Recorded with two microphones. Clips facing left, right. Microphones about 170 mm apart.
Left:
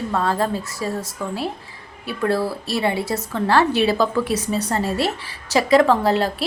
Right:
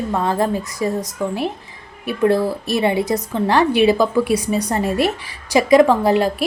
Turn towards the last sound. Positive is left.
turn(degrees=-15)  # may be behind; listen again after turning